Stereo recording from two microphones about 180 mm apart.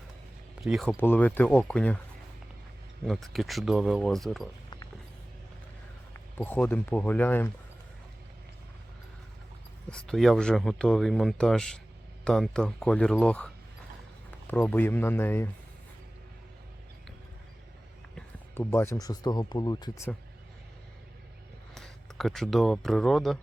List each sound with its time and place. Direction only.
0.6 s speech: centre (ahead or behind)
0.9 s speech: 10° left (ahead or behind)
3.1 s speech: centre (ahead or behind)
6.3 s speech: 10° left (ahead or behind)
9.9 s a man's voice: 5° left (ahead or behind)
18.5 s speech: 15° left (ahead or behind)
21.8 s speech: centre (ahead or behind)